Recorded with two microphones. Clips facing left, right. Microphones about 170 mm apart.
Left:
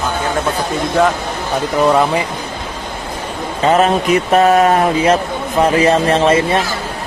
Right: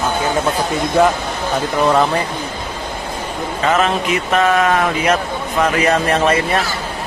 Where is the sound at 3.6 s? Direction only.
35° left (ahead or behind).